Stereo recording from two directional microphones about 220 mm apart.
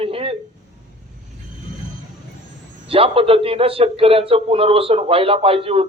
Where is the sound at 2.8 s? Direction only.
25° right (ahead or behind).